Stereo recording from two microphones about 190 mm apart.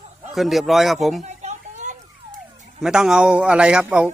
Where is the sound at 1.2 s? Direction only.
40° right (ahead or behind).